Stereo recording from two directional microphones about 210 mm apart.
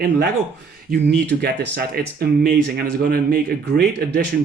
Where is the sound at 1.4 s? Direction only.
45° right (ahead or behind).